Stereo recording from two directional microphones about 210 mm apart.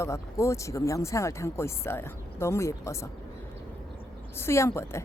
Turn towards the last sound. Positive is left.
turn(degrees=10)  # may be behind; listen again after turning